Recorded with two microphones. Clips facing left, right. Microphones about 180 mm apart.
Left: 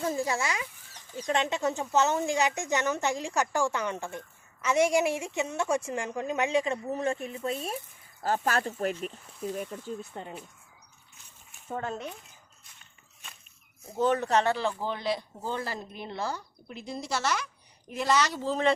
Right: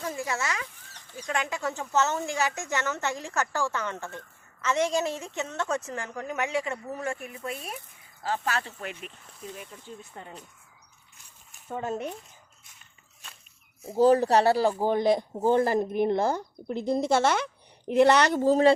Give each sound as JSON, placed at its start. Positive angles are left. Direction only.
{"t": 0.0, "sound": "chicken", "side_deg": 35}
{"t": 0.3, "sound": "a woman's voice", "side_deg": 15}
{"t": 8.2, "sound": "speech", "side_deg": 45}
{"t": 10.1, "sound": "speech", "side_deg": 25}
{"t": 11.8, "sound": "speech", "side_deg": -15}
{"t": 13.8, "sound": "speech", "side_deg": -35}